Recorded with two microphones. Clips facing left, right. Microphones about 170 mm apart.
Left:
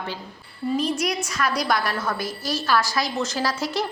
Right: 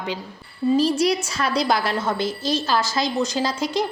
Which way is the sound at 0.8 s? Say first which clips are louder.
Right 4 dB; 30° right (ahead or behind).